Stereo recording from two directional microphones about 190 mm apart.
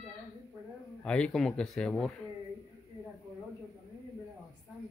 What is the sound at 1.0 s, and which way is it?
Speech, 5° left (ahead or behind).